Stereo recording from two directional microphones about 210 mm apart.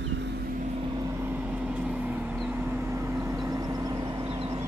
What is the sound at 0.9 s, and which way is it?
Vehicle, 15° right (ahead or behind).